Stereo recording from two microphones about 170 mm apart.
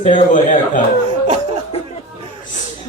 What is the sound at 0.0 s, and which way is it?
Speech, 45° left (ahead or behind).